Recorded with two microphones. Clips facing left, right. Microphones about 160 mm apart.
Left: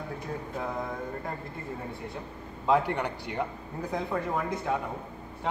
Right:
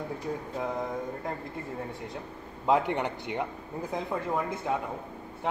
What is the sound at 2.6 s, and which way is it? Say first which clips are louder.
Speech: even; 20° right (ahead or behind).